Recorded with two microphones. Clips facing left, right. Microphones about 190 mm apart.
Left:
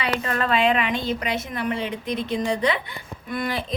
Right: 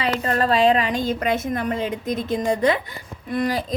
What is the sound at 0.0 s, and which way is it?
A woman's voice, 35° right (ahead or behind).